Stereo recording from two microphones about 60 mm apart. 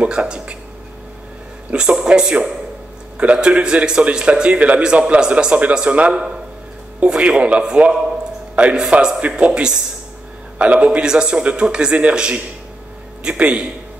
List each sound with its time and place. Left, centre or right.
0.0 s a man's voice: centre
1.7 s a man's voice: centre